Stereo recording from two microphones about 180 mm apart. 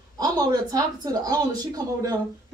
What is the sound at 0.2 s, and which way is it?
A woman's voice, 20° right (ahead or behind).